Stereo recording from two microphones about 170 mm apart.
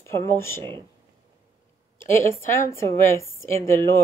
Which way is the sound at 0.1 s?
15° left (ahead or behind).